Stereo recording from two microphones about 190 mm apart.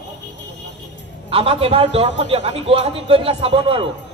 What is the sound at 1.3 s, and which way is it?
A man's voice, 30° right (ahead or behind).